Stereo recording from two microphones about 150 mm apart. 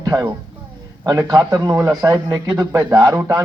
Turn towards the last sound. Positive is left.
turn(degrees=-20)  # may be behind; listen again after turning